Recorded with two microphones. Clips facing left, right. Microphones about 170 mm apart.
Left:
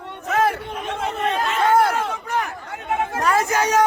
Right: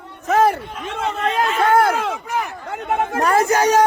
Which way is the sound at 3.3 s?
40° right (ahead or behind).